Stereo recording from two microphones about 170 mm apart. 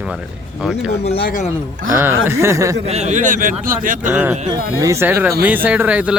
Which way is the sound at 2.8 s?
40° right (ahead or behind).